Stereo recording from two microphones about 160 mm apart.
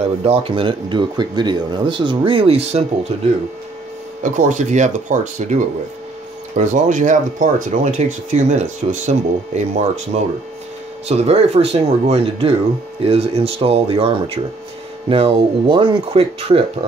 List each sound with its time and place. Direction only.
0.0 s speech: 40° right (ahead or behind)
4.2 s speech: 50° right (ahead or behind)